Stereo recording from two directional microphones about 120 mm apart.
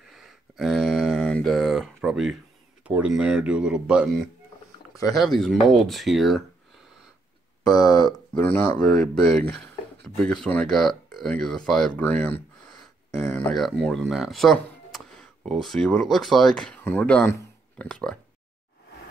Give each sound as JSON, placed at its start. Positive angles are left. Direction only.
{"t": 0.1, "sound": "a sound", "side_deg": 0}
{"t": 1.3, "sound": "speech", "side_deg": 5}
{"t": 7.7, "sound": "speech", "side_deg": 30}
{"t": 8.4, "sound": "speech", "side_deg": 20}
{"t": 8.9, "sound": "speech", "side_deg": 10}
{"t": 12.0, "sound": "speech", "side_deg": 15}
{"t": 12.7, "sound": "a sound", "side_deg": 20}
{"t": 13.5, "sound": "speech", "side_deg": 0}